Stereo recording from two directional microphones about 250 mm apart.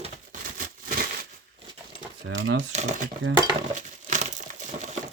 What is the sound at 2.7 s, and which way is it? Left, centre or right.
Speech, right.